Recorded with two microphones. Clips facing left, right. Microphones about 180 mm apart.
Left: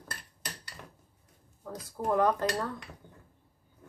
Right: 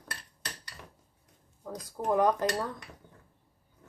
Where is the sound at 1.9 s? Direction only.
15° right (ahead or behind).